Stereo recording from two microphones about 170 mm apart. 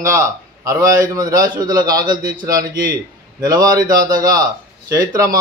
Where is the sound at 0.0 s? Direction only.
15° right (ahead or behind).